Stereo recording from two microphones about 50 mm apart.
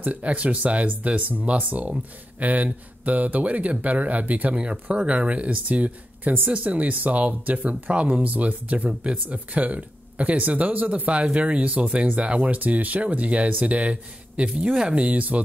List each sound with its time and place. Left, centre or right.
0.0 s speech: right